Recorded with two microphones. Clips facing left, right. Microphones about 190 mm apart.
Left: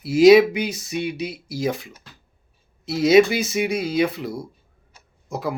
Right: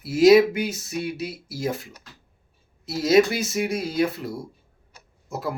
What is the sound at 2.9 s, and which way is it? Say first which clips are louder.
Speech: left 3 dB; centre (ahead or behind).